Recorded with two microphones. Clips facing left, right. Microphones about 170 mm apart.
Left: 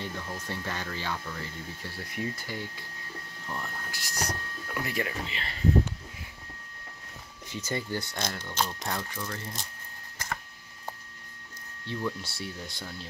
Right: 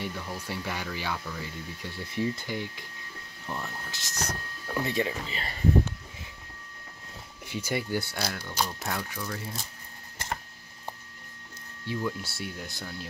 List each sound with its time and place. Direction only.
0.0 s speech: 10° right (ahead or behind)
2.0 s speech: 25° right (ahead or behind)
5.3 s speech: 40° right (ahead or behind)
7.4 s speech: 10° right (ahead or behind)
11.9 s speech: 5° right (ahead or behind)